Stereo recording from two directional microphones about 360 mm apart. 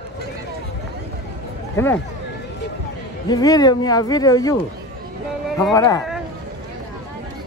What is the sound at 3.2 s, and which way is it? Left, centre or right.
Speech, centre.